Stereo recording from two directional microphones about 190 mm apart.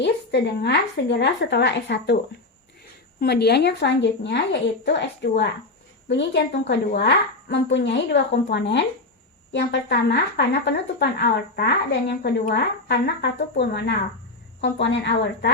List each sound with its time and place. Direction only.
0.0 s a woman's voice: 65° left (ahead or behind)
3.2 s a woman's voice: 60° left (ahead or behind)